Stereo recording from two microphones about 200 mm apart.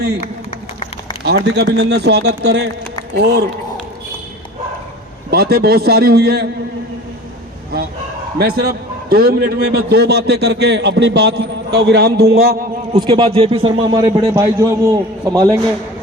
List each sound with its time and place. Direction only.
1.2 s a man's voice: 55° right (ahead or behind)
5.3 s a man's voice: 55° right (ahead or behind)
8.4 s a man's voice: 50° right (ahead or behind)
13.0 s a man's voice: 25° right (ahead or behind)